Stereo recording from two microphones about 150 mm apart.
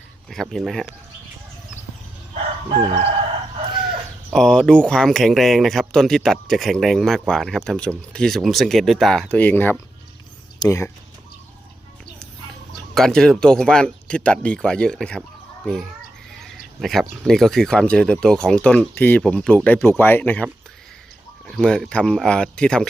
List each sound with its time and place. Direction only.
0.3 s speech: centre (ahead or behind)
3.8 s speech: centre (ahead or behind); by 10.9 s 20° left (ahead or behind)
12.9 s speech: centre (ahead or behind)